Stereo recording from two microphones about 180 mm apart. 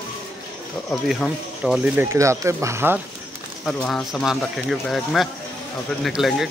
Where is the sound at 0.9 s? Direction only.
Centre (ahead or behind).